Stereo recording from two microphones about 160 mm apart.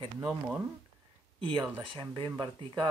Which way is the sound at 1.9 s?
30° right (ahead or behind).